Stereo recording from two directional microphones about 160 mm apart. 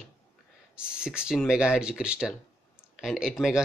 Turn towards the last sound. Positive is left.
turn(degrees=-5)  # may be behind; listen again after turning